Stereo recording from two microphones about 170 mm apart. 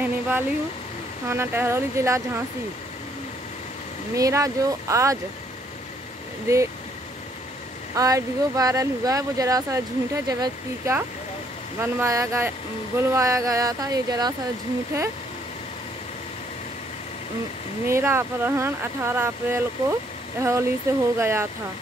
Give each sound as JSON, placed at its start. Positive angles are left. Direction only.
{"t": 1.3, "sound": "speech", "side_deg": -15}
{"t": 4.1, "sound": "speech", "side_deg": -20}
{"t": 6.4, "sound": "speech", "side_deg": -15}
{"t": 7.9, "sound": "speech", "side_deg": -20}
{"t": 17.8, "sound": "speech", "side_deg": -15}